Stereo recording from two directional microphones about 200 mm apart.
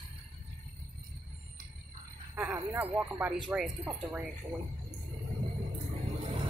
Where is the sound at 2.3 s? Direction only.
10° right (ahead or behind).